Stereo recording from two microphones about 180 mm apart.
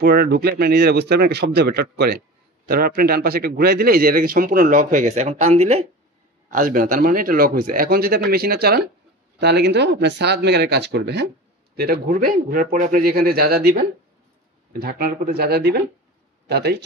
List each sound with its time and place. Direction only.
0.0 s speech: 55° right (ahead or behind); by 5.9 s 35° right (ahead or behind)
6.5 s speech: 50° right (ahead or behind); by 16.8 s 65° right (ahead or behind)